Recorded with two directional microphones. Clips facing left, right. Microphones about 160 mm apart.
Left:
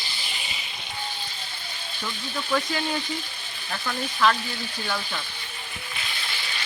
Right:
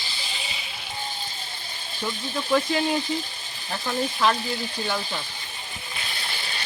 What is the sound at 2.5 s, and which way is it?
Speech, 20° right (ahead or behind).